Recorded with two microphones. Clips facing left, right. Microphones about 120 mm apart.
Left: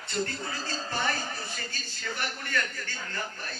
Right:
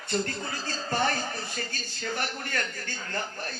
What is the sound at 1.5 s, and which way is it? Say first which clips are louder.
A man's voice: right 3 dB; 45° right (ahead or behind).